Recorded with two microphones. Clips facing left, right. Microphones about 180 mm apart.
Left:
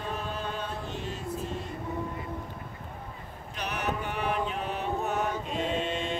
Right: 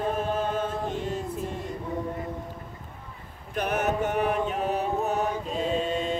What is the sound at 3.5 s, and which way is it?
Music, 50° right (ahead or behind).